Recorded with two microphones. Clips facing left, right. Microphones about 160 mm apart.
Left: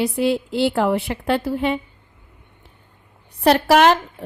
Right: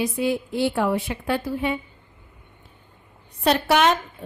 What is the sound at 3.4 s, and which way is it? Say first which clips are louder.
Speech: left 5 dB; 70° left (ahead or behind).